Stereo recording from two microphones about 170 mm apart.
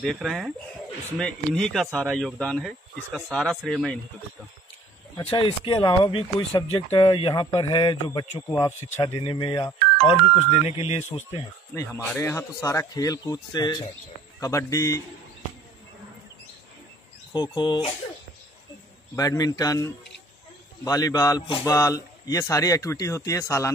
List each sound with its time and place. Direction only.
0.0 s speech: centre (ahead or behind)
5.2 s speech: 35° left (ahead or behind)
11.7 s speech: 15° left (ahead or behind)
17.3 s speech: 25° left (ahead or behind)
19.1 s speech: 20° left (ahead or behind)